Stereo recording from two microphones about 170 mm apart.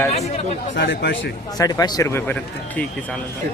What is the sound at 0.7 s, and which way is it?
Speech, 90° left.